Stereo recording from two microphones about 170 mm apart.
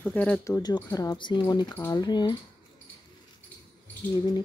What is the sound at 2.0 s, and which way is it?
Speech, 25° left (ahead or behind).